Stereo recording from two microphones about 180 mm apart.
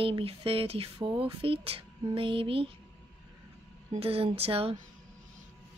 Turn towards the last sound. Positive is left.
turn(degrees=-30)  # may be behind; listen again after turning